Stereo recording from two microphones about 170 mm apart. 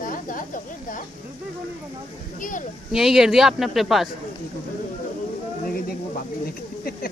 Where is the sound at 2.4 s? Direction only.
50° left (ahead or behind).